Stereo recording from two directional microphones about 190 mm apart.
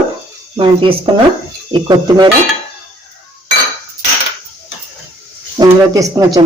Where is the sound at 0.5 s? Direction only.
25° right (ahead or behind).